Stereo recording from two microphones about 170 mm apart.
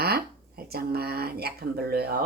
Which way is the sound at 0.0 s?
65° right (ahead or behind).